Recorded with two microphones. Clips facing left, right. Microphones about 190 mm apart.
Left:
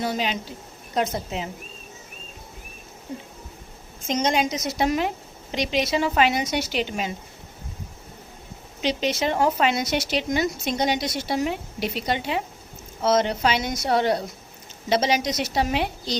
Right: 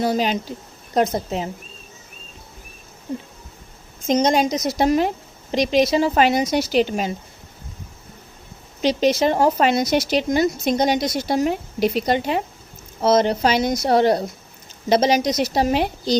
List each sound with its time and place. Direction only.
0.0 s speech: 40° right (ahead or behind)
4.0 s speech: 40° right (ahead or behind)
8.8 s speech: 40° right (ahead or behind)